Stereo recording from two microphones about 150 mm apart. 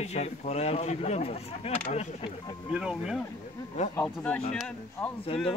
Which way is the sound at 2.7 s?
5° right (ahead or behind).